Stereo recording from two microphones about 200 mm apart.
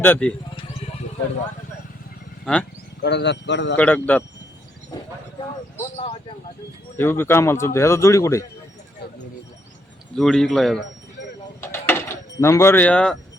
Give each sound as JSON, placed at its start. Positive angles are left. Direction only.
{"t": 0.0, "sound": "a man's voice", "side_deg": 5}
{"t": 2.4, "sound": "speech", "side_deg": 5}
{"t": 3.0, "sound": "a man's voice", "side_deg": 55}
{"t": 3.8, "sound": "a man's voice", "side_deg": 5}
{"t": 6.9, "sound": "a man's voice", "side_deg": 10}
{"t": 10.2, "sound": "speech", "side_deg": 0}
{"t": 11.6, "sound": "a sound", "side_deg": 10}